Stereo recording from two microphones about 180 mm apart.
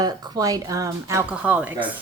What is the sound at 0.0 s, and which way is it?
Speech, 20° right (ahead or behind).